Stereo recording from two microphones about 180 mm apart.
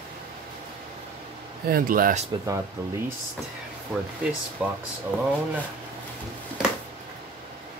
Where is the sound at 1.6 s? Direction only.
55° right (ahead or behind).